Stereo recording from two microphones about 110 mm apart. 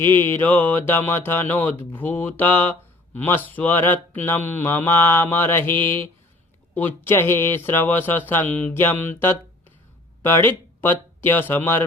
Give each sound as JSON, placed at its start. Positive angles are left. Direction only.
{"t": 0.0, "sound": "speech", "side_deg": 20}